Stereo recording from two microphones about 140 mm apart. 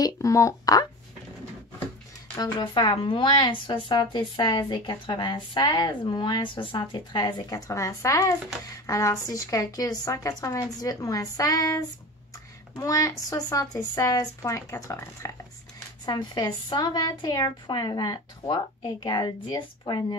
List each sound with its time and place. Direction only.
0.0 s a woman's voice: 25° left (ahead or behind)
2.3 s a woman's voice: 35° left (ahead or behind)
16.1 s a woman's voice: 30° left (ahead or behind)